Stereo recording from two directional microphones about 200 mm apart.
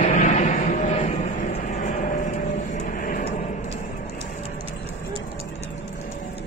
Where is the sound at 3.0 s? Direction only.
45° left (ahead or behind).